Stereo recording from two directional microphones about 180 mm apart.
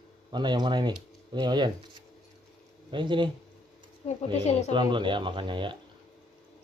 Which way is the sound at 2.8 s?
25° right (ahead or behind).